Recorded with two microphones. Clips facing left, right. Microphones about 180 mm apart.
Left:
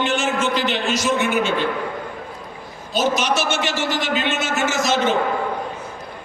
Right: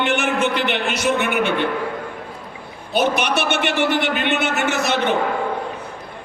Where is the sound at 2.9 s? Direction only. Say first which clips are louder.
Right 1 dB; 60° right (ahead or behind).